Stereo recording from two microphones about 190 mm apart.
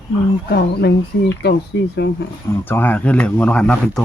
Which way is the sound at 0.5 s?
60° left (ahead or behind).